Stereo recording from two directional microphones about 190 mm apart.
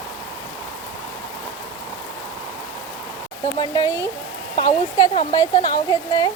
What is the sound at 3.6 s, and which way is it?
Speech, 20° left (ahead or behind).